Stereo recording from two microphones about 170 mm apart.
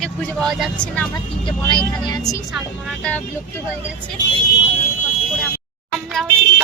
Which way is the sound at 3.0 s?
10° left (ahead or behind).